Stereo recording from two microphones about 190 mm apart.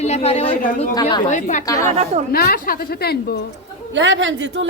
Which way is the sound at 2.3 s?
55° left (ahead or behind).